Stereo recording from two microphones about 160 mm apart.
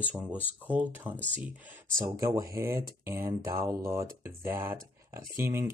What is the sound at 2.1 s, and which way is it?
Speech, 20° right (ahead or behind).